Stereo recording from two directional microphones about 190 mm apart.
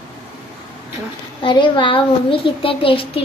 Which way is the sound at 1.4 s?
25° left (ahead or behind).